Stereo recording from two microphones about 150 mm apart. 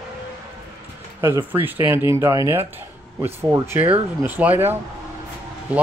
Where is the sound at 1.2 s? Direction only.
15° right (ahead or behind).